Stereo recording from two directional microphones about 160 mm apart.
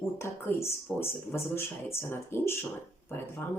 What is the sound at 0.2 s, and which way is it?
Speech, 15° left (ahead or behind).